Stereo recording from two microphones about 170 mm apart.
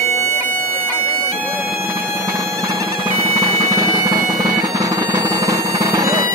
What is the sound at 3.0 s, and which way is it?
Bagpipes, 20° right (ahead or behind).